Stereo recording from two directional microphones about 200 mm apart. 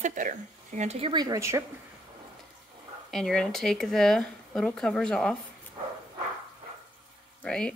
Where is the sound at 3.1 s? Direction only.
Centre (ahead or behind).